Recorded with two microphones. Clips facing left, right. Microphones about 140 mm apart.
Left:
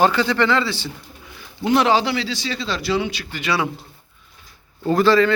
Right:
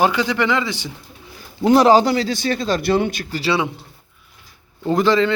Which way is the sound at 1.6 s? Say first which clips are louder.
Right 5 dB; 40° right (ahead or behind).